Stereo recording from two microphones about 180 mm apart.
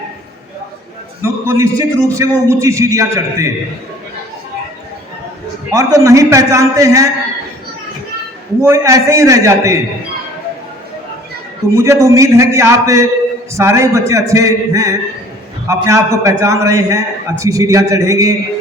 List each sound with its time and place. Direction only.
1.2 s a man's voice: 15° right (ahead or behind)
5.7 s a man's voice: 15° right (ahead or behind)
8.6 s a man's voice: 15° right (ahead or behind)
11.7 s a man's voice: 15° right (ahead or behind)